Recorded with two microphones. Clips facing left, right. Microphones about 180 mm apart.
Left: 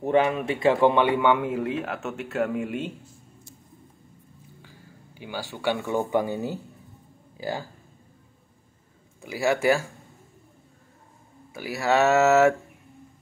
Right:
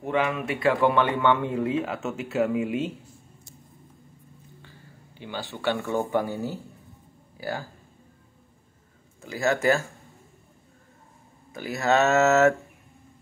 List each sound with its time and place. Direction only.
0.0 s speech: 35° left (ahead or behind)
0.6 s speech: 20° left (ahead or behind); by 2.9 s 5° right (ahead or behind)
4.6 s speech: 10° left (ahead or behind)
9.2 s speech: 15° left (ahead or behind)
11.5 s speech: 10° left (ahead or behind)